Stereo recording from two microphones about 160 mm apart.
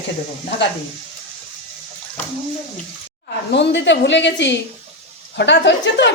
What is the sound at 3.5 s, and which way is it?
Speech, 90° left.